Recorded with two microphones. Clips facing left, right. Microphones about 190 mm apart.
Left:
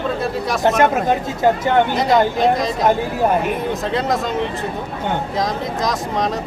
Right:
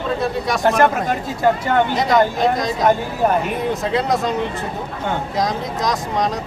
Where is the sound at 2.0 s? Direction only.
Centre (ahead or behind).